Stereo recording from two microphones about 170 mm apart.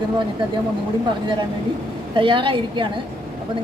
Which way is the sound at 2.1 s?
30° right (ahead or behind).